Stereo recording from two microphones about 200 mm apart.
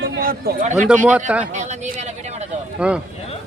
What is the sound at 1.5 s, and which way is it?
Speech, 35° right (ahead or behind).